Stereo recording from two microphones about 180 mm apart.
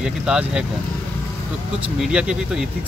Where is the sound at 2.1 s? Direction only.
5° right (ahead or behind).